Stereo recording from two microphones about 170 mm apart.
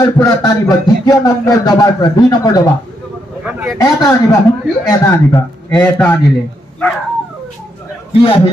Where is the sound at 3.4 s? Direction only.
5° right (ahead or behind).